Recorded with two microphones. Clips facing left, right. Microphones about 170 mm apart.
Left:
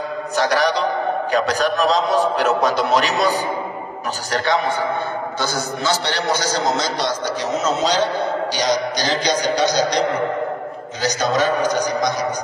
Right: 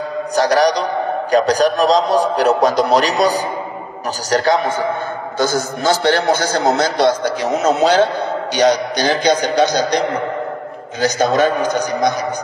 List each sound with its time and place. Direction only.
0.4 s a man's voice: 40° right (ahead or behind)